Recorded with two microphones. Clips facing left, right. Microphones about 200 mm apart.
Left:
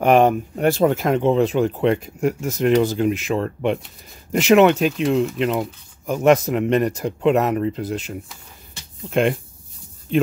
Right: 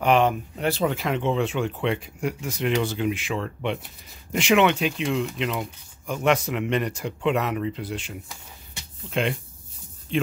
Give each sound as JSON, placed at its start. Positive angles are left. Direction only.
{"t": 0.0, "sound": "speech", "side_deg": 45}